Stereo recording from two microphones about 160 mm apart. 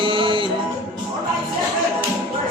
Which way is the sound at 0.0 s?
30° right (ahead or behind).